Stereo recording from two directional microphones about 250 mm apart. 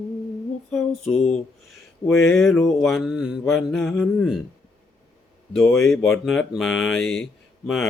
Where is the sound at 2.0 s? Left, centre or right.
Centre.